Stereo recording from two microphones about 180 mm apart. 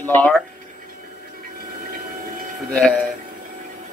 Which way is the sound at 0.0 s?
10° left (ahead or behind).